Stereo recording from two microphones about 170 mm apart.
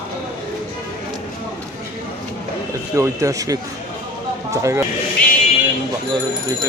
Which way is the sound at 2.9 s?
20° right (ahead or behind).